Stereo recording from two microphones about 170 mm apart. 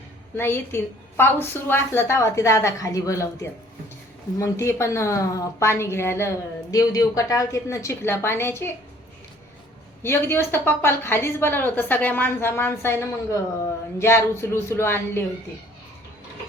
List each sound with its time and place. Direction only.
0.3 s a woman's voice: 15° left (ahead or behind)
4.4 s a woman's voice: 15° left (ahead or behind)
10.0 s a woman's voice: 15° left (ahead or behind)
14.0 s a woman's voice: 15° left (ahead or behind)